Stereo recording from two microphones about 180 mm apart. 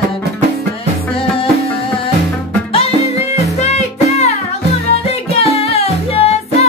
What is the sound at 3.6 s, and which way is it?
Music, 40° left (ahead or behind).